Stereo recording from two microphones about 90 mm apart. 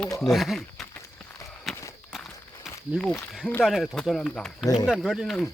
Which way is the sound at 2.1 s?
5° right (ahead or behind).